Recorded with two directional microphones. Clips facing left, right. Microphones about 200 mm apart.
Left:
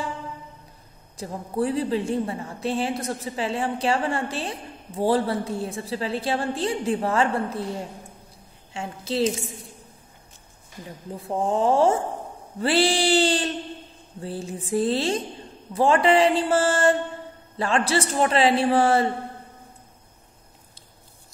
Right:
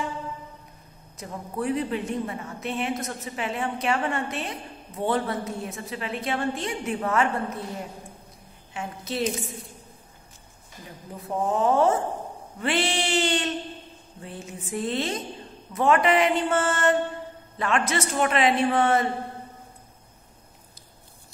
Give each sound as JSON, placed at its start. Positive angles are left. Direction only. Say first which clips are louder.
{"t": 1.1, "sound": "a woman's voice", "louder": "left 5 dB", "side_deg": 30}
{"t": 8.7, "sound": "a woman's voice", "louder": "left 4 dB", "side_deg": 30}
{"t": 11.2, "sound": "a woman's voice", "louder": "left 2 dB", "side_deg": 30}